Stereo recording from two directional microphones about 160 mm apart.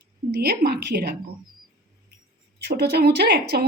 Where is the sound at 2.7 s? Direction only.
90° right.